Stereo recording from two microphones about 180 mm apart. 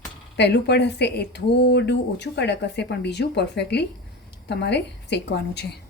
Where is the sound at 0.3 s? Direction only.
70° left (ahead or behind).